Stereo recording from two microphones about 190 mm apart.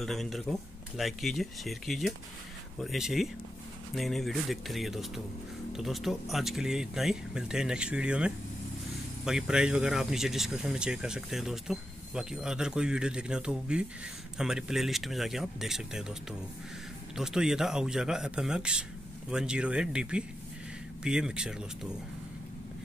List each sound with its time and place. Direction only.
0.0 s speech: centre (ahead or behind)